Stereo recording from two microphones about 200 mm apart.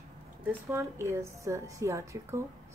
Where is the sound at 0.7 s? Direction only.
15° right (ahead or behind).